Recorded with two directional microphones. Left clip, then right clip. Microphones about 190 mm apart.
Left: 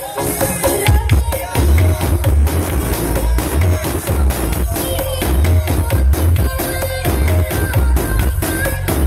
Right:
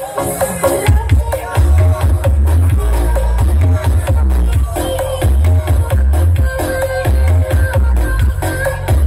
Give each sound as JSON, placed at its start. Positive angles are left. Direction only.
{"t": 0.2, "sound": "music", "side_deg": -40}